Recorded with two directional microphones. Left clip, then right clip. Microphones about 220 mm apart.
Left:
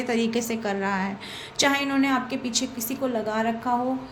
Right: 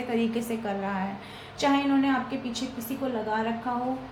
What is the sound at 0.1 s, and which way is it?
A woman's voice, 45° left (ahead or behind).